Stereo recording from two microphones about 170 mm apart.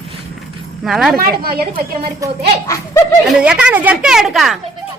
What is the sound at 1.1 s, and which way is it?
Speech, 60° right (ahead or behind).